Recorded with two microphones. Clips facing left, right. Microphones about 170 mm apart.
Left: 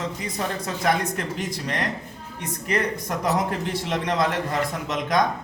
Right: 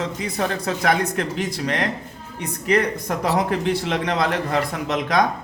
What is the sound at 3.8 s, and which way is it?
Speech, 70° right (ahead or behind).